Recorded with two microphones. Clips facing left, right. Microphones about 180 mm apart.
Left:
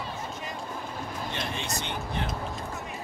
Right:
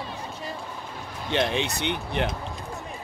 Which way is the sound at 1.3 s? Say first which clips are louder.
Right 13 dB; 75° right (ahead or behind).